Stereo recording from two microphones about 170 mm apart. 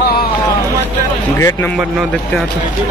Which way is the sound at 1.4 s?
15° left (ahead or behind).